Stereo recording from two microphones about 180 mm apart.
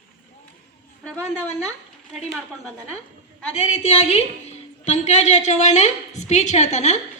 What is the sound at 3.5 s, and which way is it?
A woman's voice, 35° left (ahead or behind).